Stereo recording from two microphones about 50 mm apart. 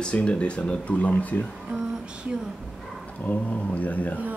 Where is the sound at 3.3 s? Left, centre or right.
Left.